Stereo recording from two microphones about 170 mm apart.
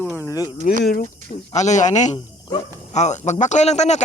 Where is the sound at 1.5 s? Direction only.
45° left (ahead or behind).